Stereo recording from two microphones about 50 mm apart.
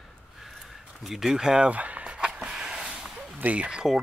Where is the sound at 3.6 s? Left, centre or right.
Centre.